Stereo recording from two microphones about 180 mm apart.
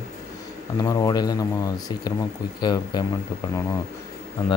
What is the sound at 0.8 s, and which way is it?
Speech, 20° left (ahead or behind).